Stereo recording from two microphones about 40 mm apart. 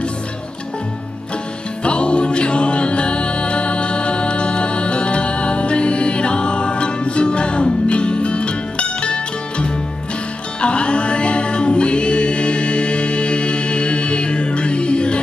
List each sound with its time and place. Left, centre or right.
1.9 s music: left